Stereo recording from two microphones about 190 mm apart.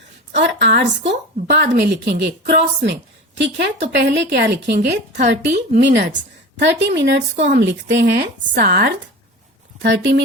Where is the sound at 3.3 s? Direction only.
65° right (ahead or behind).